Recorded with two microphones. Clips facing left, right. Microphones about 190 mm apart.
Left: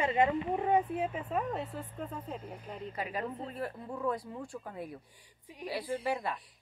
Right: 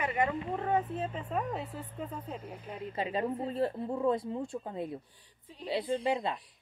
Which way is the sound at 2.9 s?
25° right (ahead or behind).